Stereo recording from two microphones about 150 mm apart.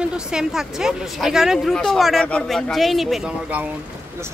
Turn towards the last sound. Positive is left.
turn(degrees=-5)  # may be behind; listen again after turning